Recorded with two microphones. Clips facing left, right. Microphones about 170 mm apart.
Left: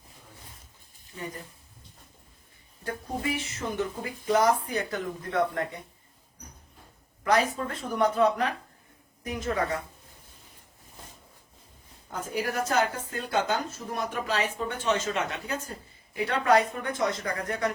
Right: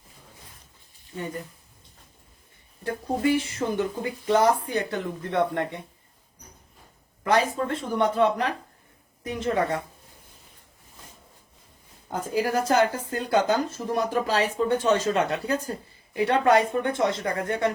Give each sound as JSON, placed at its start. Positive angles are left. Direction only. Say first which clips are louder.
{"t": 1.1, "sound": "speech", "louder": "right 5 dB", "side_deg": -30}
{"t": 2.8, "sound": "speech", "louder": "right 7 dB", "side_deg": -30}
{"t": 7.3, "sound": "speech", "louder": "right 2 dB", "side_deg": -30}
{"t": 12.4, "sound": "speech", "louder": "right 5 dB", "side_deg": -30}